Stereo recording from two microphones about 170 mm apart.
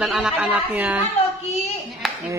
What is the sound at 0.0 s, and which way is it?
Speech, 5° right (ahead or behind).